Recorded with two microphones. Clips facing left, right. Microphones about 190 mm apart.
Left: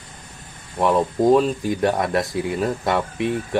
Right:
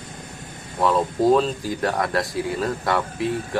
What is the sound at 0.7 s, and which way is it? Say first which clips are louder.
Speech: left 2 dB; 25° left (ahead or behind).